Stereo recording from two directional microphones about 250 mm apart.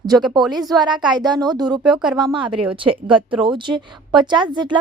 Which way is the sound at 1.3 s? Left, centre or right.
Centre.